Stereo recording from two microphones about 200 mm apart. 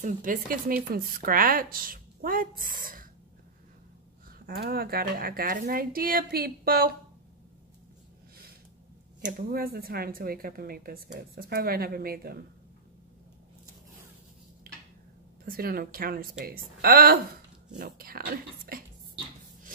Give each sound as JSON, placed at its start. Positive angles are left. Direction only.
{"t": 0.0, "sound": "a woman's voice", "side_deg": -40}
{"t": 4.5, "sound": "a woman's voice", "side_deg": -50}
{"t": 9.2, "sound": "a woman's voice", "side_deg": -50}
{"t": 14.7, "sound": "a sound", "side_deg": -45}
{"t": 15.4, "sound": "a woman's voice", "side_deg": -50}